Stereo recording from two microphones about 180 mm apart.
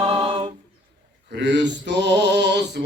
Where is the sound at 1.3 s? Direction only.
75° right (ahead or behind).